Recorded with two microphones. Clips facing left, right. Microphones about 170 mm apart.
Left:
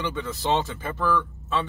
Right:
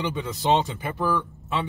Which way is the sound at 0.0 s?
15° right (ahead or behind).